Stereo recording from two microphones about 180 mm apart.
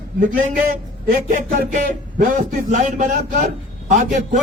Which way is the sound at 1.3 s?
45° right (ahead or behind).